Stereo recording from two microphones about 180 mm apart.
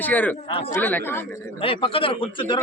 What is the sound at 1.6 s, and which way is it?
A man's voice, 30° left (ahead or behind).